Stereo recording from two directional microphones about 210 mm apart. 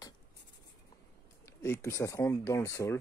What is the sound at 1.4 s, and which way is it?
Speech, 10° left (ahead or behind).